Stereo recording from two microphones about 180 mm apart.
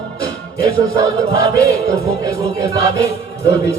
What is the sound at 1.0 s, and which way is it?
Music, 20° right (ahead or behind).